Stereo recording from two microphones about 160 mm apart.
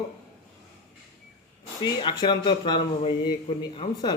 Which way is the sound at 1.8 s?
30° left (ahead or behind).